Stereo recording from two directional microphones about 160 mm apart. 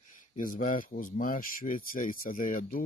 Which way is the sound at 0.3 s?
55° left (ahead or behind).